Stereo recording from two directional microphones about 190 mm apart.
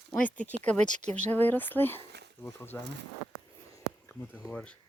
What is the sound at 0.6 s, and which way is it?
Speech, 5° left (ahead or behind).